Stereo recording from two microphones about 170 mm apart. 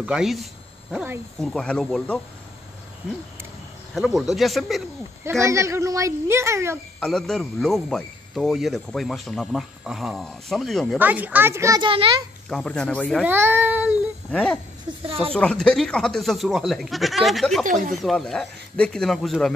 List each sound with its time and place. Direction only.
0.0 s speech: 5° right (ahead or behind)
0.9 s a child's voice: 10° right (ahead or behind)
1.4 s speech: 5° left (ahead or behind)
3.9 s speech: centre (ahead or behind)
5.4 s a child's voice: 15° right (ahead or behind)
7.0 s speech: 5° left (ahead or behind)
11.0 s a child's voice: 10° right (ahead or behind)
11.9 s a child's voice: 30° right (ahead or behind)
12.4 s speech: 5° left (ahead or behind)
13.2 s a child's voice: 10° right (ahead or behind)
14.3 s speech: 5° left (ahead or behind)
17.6 s speech: 50° right (ahead or behind)
17.9 s speech: centre (ahead or behind)